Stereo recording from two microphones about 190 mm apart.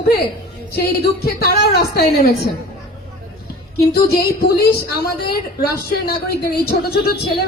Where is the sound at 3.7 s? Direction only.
55° left (ahead or behind).